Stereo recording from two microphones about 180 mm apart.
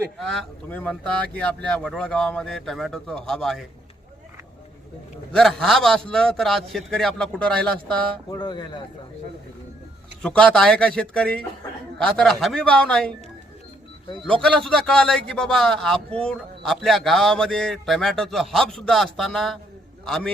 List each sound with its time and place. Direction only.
0.2 s a man's voice: 5° left (ahead or behind)
5.3 s a man's voice: centre (ahead or behind)
8.3 s speech: 25° left (ahead or behind)
10.2 s a man's voice: 5° left (ahead or behind)
14.4 s a man's voice: 5° left (ahead or behind)